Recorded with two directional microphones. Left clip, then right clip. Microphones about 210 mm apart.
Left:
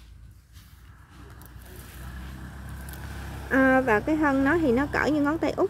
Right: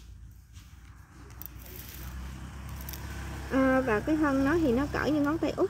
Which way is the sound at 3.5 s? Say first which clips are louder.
Left 5 dB; centre (ahead or behind).